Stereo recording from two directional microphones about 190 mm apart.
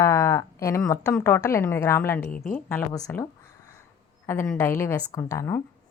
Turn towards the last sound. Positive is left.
turn(degrees=15)  # may be behind; listen again after turning